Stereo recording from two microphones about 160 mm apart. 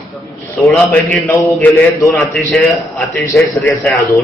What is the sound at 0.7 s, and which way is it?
Speech, 10° left (ahead or behind).